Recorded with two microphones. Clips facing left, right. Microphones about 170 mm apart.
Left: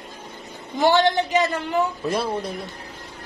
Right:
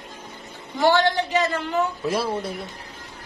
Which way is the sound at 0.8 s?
20° left (ahead or behind).